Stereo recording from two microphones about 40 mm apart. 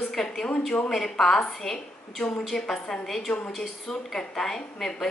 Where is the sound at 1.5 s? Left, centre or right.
Centre.